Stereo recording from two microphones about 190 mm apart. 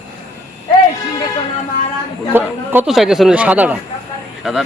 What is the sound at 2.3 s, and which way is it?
A man's voice, 10° right (ahead or behind).